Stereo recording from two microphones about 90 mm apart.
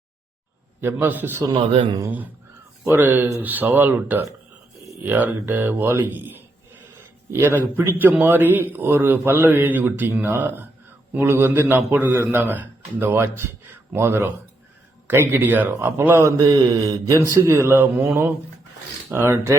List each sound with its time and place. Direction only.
0.8 s a man's voice: 25° right (ahead or behind)
2.8 s a man's voice: 25° right (ahead or behind)
16.4 s mantra: 50° right (ahead or behind)
17.3 s a man's voice: 30° right (ahead or behind)